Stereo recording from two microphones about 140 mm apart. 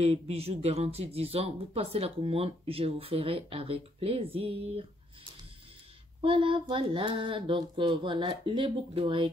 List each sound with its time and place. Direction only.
0.0 s speech: 45° right (ahead or behind)
6.2 s speech: 40° right (ahead or behind)